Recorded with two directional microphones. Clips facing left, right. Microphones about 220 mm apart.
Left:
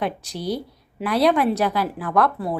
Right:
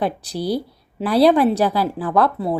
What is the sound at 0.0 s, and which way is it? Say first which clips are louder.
A woman's voice: right 4 dB; 35° right (ahead or behind).